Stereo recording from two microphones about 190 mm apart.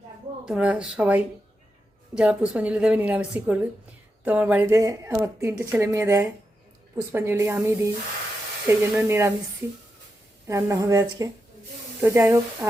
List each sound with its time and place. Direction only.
0.4 s speech: 5° right (ahead or behind)
10.4 s speech: 15° right (ahead or behind)